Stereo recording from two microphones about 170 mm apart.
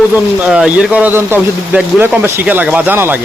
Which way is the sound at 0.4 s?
5° right (ahead or behind).